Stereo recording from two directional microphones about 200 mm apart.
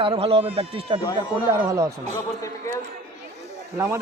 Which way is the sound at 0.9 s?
20° left (ahead or behind).